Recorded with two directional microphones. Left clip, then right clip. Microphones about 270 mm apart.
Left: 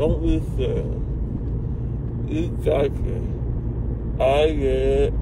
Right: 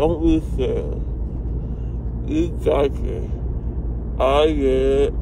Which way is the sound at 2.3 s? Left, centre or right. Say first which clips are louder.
Right 3 dB; centre.